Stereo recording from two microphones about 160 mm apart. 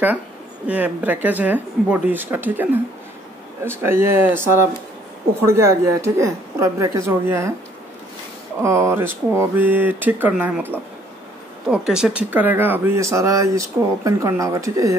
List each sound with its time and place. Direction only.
0.7 s speech: 10° right (ahead or behind)
5.5 s speech: 15° right (ahead or behind)
8.6 s speech: 15° right (ahead or behind)